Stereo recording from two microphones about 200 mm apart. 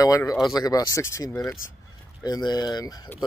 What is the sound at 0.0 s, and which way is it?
Speech, 15° left (ahead or behind).